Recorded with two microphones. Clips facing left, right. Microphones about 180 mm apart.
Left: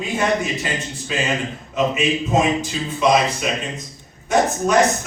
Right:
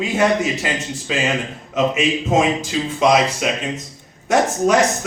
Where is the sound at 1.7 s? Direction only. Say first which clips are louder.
Right 2 dB; 90° right.